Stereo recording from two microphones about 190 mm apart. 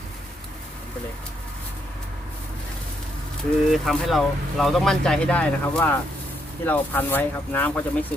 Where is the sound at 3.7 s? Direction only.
Centre (ahead or behind).